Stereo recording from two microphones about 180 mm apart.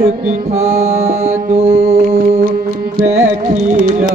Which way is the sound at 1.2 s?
35° right (ahead or behind).